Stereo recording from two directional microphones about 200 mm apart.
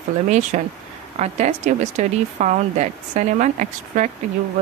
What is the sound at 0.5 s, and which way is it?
A woman's voice, 40° right (ahead or behind).